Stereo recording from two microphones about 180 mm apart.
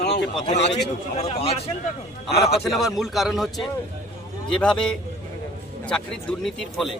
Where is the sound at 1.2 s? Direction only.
35° left (ahead or behind).